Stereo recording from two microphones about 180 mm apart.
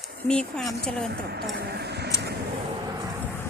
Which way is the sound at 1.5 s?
65° right (ahead or behind).